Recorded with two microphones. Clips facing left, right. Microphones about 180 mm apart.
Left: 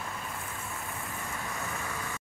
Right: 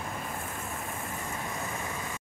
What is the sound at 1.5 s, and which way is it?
Vehicle, 20° right (ahead or behind).